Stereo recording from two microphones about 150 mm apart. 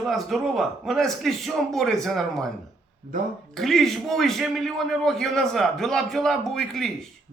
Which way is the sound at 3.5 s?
Centre (ahead or behind).